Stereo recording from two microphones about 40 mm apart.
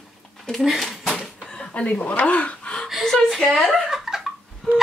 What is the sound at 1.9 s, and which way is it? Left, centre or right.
Speech, left.